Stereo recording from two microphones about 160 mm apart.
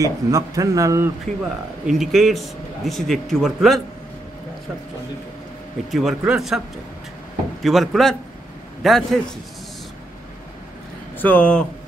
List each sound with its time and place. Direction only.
0.0 s speech: 20° right (ahead or behind)
1.4 s a man's voice: centre (ahead or behind)
5.9 s a man's voice: centre (ahead or behind)
7.6 s a man's voice: centre (ahead or behind)
11.1 s speech: 10° left (ahead or behind)